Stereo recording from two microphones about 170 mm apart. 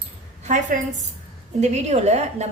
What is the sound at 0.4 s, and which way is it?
A woman's voice, 45° right (ahead or behind).